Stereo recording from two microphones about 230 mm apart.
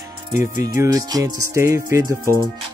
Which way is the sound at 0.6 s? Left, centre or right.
Centre.